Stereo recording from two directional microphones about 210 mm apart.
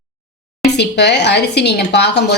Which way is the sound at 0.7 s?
55° left (ahead or behind).